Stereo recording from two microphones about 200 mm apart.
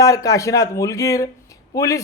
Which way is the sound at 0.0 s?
15° left (ahead or behind).